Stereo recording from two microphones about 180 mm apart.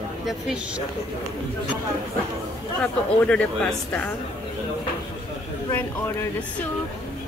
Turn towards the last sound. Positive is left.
turn(degrees=15)  # may be behind; listen again after turning